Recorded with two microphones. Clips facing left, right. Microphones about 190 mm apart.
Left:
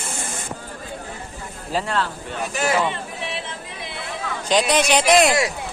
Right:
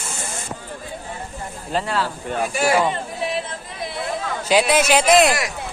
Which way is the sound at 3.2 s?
40° right (ahead or behind).